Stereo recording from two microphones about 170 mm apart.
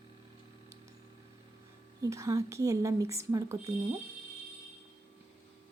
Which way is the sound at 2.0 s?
20° right (ahead or behind).